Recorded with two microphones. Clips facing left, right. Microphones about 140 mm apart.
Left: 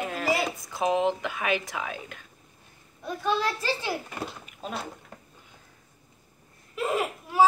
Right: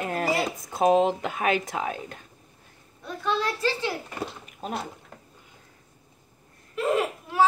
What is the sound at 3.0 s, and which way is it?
A child's voice, 10° left (ahead or behind).